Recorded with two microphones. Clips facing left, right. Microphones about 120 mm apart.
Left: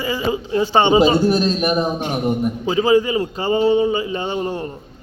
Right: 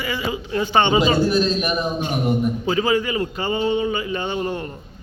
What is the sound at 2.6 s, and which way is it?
Speech, 20° left (ahead or behind).